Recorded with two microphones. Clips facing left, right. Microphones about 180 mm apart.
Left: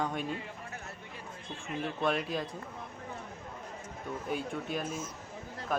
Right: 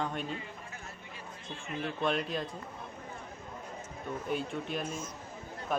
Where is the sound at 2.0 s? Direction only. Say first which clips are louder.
Even; 5° left (ahead or behind).